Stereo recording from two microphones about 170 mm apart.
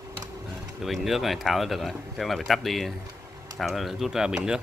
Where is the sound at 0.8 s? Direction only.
Centre (ahead or behind).